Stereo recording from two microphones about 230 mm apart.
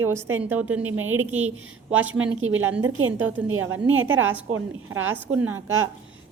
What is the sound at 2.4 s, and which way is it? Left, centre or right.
Speech, right.